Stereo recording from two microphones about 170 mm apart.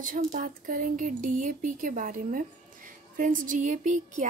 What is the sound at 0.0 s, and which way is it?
Speech, 50° right (ahead or behind).